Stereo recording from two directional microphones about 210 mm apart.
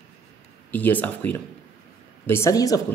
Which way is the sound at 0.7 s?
10° left (ahead or behind).